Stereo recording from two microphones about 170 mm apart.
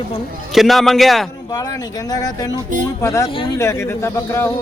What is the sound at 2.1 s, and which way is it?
A man's voice, 20° left (ahead or behind).